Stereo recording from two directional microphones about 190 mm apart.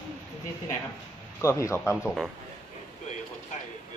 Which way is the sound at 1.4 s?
15° left (ahead or behind).